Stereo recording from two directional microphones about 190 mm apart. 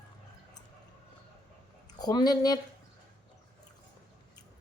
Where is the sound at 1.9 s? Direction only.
20° left (ahead or behind).